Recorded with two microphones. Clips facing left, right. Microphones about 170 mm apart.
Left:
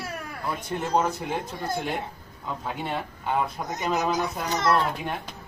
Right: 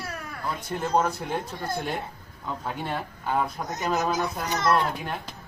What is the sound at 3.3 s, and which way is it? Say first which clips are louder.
Speech: even; 5° left (ahead or behind).